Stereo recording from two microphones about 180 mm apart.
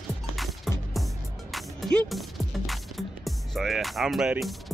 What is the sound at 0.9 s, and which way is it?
Music, centre (ahead or behind).